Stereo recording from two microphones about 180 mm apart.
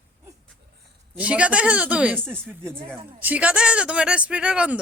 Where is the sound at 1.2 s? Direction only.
5° right (ahead or behind).